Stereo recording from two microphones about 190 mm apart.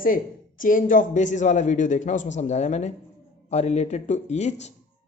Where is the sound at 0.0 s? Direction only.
45° left (ahead or behind).